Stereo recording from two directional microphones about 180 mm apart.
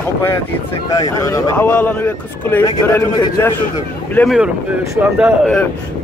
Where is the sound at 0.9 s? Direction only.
20° left (ahead or behind).